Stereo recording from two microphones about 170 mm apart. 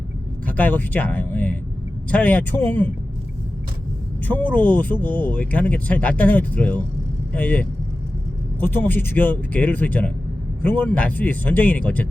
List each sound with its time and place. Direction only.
0.4 s speech: 10° left (ahead or behind)
4.3 s speech: 10° left (ahead or behind)